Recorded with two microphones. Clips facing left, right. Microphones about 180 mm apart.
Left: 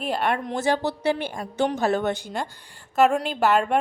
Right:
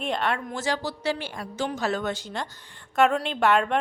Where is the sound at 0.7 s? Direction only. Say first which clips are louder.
Left 5 dB; 60° left (ahead or behind).